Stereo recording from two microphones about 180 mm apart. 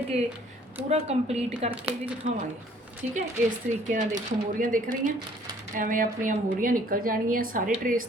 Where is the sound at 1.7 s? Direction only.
5° right (ahead or behind).